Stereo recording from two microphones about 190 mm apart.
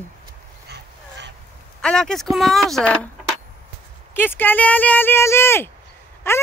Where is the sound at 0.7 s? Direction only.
65° right (ahead or behind).